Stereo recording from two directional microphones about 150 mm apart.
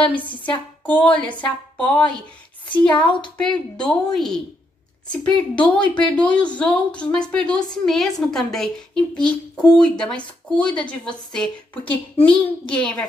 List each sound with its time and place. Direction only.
0.4 s a child's voice: 10° left (ahead or behind)